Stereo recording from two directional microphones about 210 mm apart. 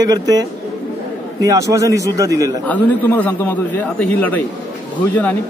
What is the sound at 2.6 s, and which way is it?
A man's voice, 10° left (ahead or behind).